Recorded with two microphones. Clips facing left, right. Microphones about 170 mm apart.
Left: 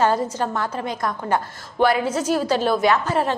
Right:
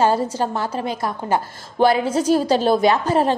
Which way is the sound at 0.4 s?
30° right (ahead or behind).